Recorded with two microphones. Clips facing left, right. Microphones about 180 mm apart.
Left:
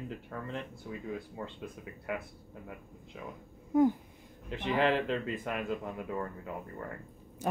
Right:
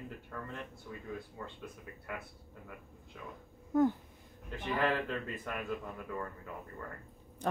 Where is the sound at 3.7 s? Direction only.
15° left (ahead or behind).